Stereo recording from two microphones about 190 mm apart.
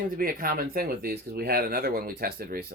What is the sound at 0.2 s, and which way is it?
Speech, 50° right (ahead or behind).